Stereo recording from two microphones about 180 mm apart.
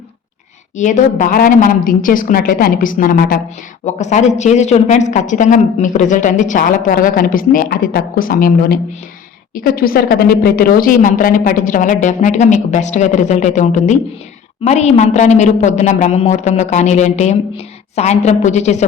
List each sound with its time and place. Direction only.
0.8 s speech: 45° left (ahead or behind)
3.8 s a woman's voice: 40° left (ahead or behind)